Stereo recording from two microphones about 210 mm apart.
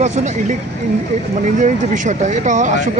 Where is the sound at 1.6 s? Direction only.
35° right (ahead or behind).